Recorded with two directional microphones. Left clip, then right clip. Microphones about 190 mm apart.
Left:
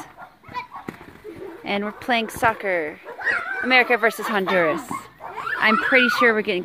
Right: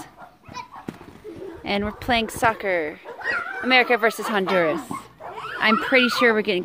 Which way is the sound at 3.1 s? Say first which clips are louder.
Left 3 dB; 30° left (ahead or behind).